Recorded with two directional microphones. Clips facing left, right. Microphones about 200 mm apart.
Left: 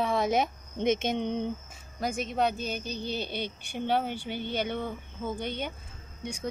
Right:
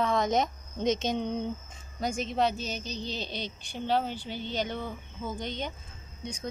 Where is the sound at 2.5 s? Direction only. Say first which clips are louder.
Left 2 dB; 55° left (ahead or behind).